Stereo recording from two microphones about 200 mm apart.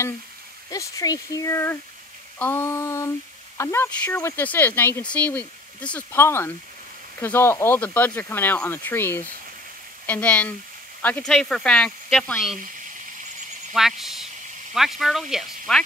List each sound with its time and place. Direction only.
0.7 s speech: 15° left (ahead or behind); by 12.5 s centre (ahead or behind)
13.7 s speech: centre (ahead or behind)